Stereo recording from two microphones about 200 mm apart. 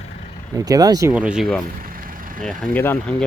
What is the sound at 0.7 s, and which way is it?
Speech, 20° right (ahead or behind).